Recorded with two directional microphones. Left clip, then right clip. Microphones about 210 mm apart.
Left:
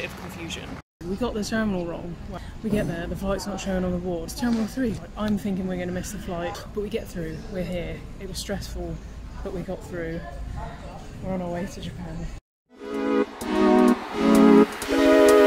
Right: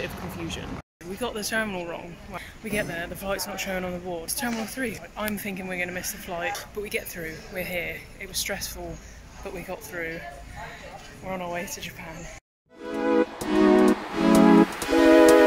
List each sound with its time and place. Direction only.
0.0 s speech: 15° right (ahead or behind)
1.2 s speech: 25° left (ahead or behind)
9.7 s speech: 15° left (ahead or behind)
11.2 s speech: 15° left (ahead or behind)
12.8 s music: centre (ahead or behind)